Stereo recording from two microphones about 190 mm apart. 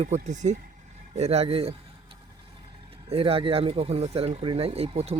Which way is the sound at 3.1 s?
30° right (ahead or behind).